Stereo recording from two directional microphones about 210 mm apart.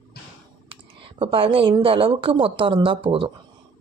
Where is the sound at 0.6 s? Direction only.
25° right (ahead or behind).